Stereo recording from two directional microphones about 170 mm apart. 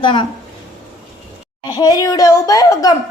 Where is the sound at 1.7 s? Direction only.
25° left (ahead or behind).